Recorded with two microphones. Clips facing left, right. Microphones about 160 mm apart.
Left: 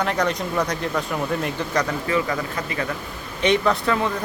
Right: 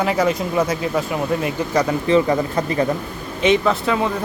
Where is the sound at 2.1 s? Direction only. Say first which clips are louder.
Right 9 dB; 30° right (ahead or behind).